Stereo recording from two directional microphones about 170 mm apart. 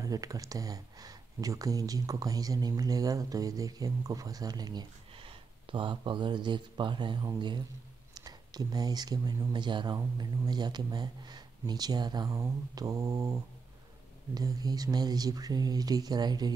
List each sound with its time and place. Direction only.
0.0 s speech: 20° right (ahead or behind)